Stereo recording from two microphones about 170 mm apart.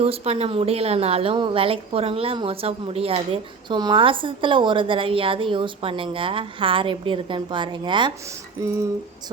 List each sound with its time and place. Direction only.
0.0 s a woman's voice: 35° right (ahead or behind)